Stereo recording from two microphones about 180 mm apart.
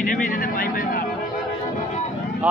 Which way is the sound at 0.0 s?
50° left (ahead or behind).